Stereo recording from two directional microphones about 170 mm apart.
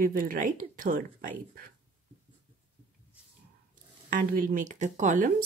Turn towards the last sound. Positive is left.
turn(degrees=-50)  # may be behind; listen again after turning